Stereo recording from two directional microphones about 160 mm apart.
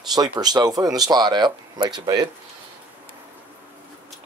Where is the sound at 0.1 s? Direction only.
25° right (ahead or behind).